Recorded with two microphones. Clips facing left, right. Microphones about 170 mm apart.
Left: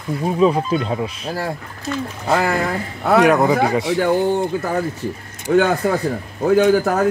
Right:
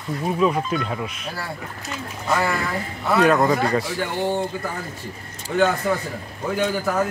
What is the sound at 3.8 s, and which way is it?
Speech, 70° left (ahead or behind).